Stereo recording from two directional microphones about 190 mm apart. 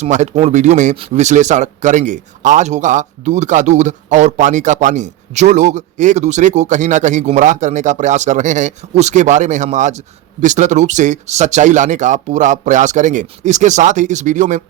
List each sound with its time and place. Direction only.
0.0 s a man's voice: 40° right (ahead or behind)